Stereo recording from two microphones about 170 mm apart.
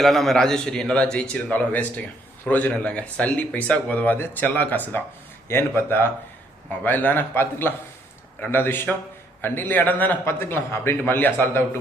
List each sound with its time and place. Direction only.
0.0 s a man's voice: centre (ahead or behind)